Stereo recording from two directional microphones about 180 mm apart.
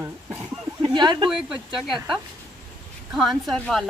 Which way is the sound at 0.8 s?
25° right (ahead or behind).